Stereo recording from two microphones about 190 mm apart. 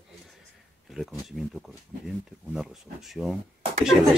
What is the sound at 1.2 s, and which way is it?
Speech, centre (ahead or behind).